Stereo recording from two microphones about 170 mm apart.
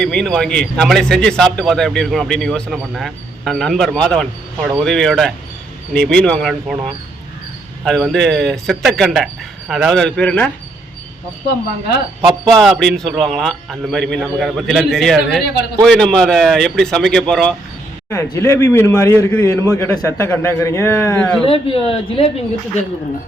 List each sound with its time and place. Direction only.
0.0 s a man's voice: 5° left (ahead or behind)
7.9 s a man's voice: centre (ahead or behind)
12.5 s a man's voice: centre (ahead or behind)
18.1 s a man's voice: 20° left (ahead or behind)
21.4 s speech: 35° left (ahead or behind)